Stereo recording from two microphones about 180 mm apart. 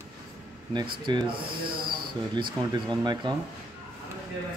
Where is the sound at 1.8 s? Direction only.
55° right (ahead or behind).